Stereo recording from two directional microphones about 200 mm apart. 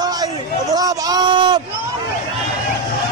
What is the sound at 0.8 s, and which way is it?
Speech, 20° right (ahead or behind).